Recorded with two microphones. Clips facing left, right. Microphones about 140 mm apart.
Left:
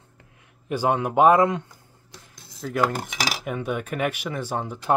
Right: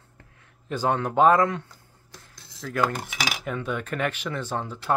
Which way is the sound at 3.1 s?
40° left (ahead or behind).